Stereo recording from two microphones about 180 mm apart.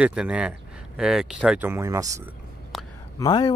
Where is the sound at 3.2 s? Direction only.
20° left (ahead or behind).